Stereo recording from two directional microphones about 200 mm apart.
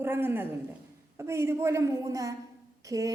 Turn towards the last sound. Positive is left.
turn(degrees=-15)  # may be behind; listen again after turning